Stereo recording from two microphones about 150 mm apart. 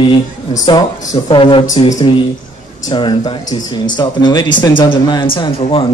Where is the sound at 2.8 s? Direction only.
30° left (ahead or behind).